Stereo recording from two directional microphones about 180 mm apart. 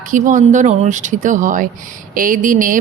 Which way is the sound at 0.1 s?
45° right (ahead or behind).